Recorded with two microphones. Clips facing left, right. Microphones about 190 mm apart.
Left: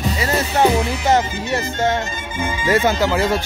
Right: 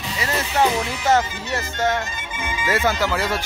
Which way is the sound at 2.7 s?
20° left (ahead or behind).